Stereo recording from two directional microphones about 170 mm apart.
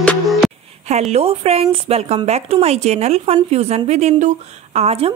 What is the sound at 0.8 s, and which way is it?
Speech, 40° right (ahead or behind).